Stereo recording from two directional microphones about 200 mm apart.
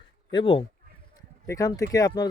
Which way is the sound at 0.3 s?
25° left (ahead or behind).